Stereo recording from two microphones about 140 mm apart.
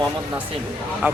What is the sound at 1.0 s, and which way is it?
Speech, 5° right (ahead or behind).